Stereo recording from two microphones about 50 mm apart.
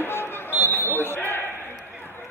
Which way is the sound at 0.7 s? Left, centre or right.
Left.